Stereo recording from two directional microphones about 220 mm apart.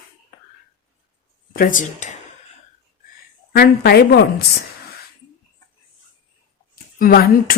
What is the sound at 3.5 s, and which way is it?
Speech, 45° left (ahead or behind).